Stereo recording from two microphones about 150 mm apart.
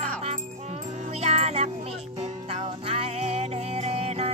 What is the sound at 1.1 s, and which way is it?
Music, 45° right (ahead or behind).